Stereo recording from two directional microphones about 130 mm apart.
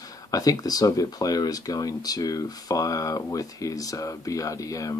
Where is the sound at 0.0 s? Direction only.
30° left (ahead or behind).